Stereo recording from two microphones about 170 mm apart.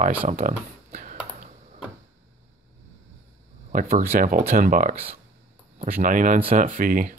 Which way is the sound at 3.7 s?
55° right (ahead or behind).